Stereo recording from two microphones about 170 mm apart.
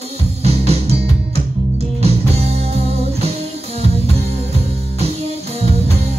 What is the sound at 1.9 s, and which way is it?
Music, 40° right (ahead or behind).